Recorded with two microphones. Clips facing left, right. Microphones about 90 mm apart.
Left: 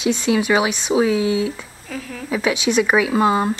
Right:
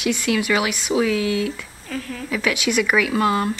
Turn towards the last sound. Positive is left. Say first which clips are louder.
# left 3 dB
turn(degrees=20)  # may be behind; listen again after turning